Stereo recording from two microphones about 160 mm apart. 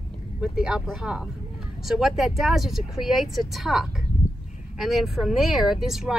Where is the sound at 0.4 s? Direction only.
5° right (ahead or behind).